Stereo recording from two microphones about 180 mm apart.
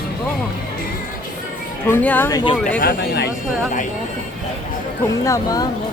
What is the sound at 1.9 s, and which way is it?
Speech, 10° left (ahead or behind).